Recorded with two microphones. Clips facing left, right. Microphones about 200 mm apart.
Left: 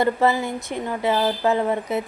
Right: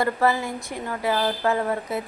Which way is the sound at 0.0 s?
20° left (ahead or behind).